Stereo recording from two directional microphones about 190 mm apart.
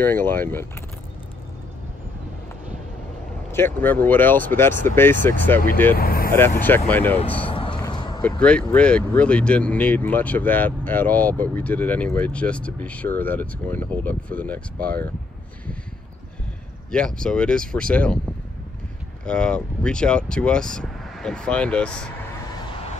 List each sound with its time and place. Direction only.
0.0 s speech: 10° left (ahead or behind)
3.5 s speech: 10° left (ahead or behind)
5.9 s speech: 50° left (ahead or behind)
6.9 s speech: 10° left (ahead or behind)
7.4 s a sound: 25° left (ahead or behind)
8.2 s speech: 5° left (ahead or behind)
16.9 s speech: 5° left (ahead or behind)
19.2 s speech: 5° left (ahead or behind)